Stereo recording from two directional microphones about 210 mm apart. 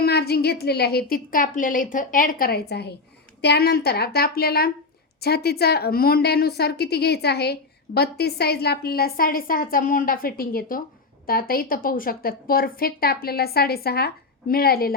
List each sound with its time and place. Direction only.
0.0 s a woman's voice: 50° left (ahead or behind)